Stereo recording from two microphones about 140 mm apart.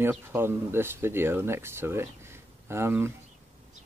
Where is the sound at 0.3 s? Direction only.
15° right (ahead or behind).